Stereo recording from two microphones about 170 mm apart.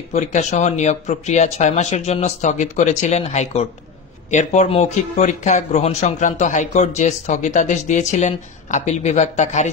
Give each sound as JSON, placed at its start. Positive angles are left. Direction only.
{"t": 0.1, "sound": "speech", "side_deg": 45}